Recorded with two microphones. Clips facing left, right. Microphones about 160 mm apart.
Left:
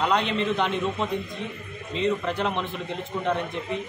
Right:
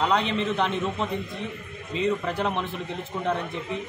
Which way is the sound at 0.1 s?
Centre (ahead or behind).